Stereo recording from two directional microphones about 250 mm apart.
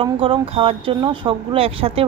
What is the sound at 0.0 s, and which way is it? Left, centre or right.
Speech, right.